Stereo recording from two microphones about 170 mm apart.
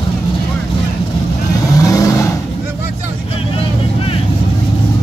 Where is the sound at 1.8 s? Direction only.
20° left (ahead or behind).